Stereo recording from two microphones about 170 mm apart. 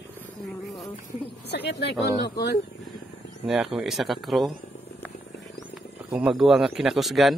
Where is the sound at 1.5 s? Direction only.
85° left.